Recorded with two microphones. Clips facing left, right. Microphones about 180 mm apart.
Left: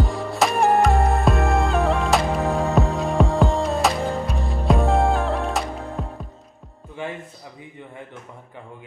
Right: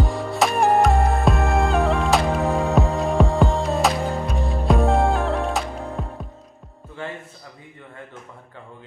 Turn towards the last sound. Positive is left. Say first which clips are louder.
# left 2 dB
turn(degrees=15)  # may be behind; listen again after turning